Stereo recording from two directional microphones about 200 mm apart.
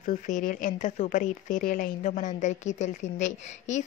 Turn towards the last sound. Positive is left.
turn(degrees=35)  # may be behind; listen again after turning